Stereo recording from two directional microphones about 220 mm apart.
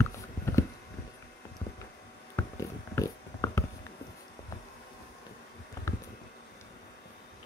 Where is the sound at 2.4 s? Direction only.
15° left (ahead or behind).